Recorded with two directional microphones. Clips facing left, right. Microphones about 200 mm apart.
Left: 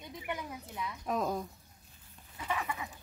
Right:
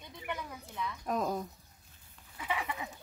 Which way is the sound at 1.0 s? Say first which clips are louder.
Even; centre (ahead or behind).